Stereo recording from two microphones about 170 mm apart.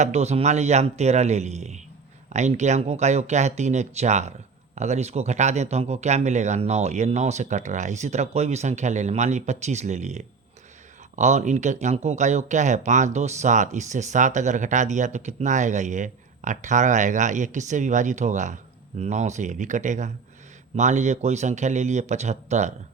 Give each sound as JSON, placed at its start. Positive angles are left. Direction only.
{"t": 0.0, "sound": "speech", "side_deg": -40}